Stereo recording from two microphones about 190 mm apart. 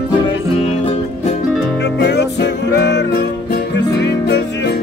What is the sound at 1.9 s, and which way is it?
Music, 60° left (ahead or behind).